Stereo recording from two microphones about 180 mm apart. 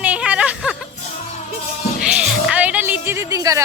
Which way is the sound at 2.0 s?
5° right (ahead or behind).